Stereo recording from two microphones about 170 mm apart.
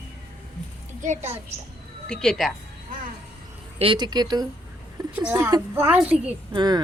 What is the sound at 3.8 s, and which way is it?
Speech, 25° right (ahead or behind).